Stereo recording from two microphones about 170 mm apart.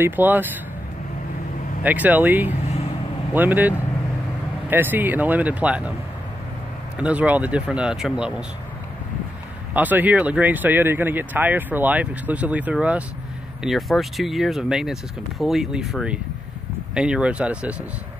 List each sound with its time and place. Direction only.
0.0 s speech: 10° right (ahead or behind)
1.8 s speech: 10° right (ahead or behind)
2.6 s vehicle: 40° left (ahead or behind)
3.3 s speech: 10° right (ahead or behind)
7.0 s speech: 10° right (ahead or behind)
9.8 s speech: 10° right (ahead or behind)